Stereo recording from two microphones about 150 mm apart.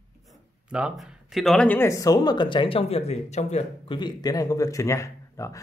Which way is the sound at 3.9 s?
30° left (ahead or behind).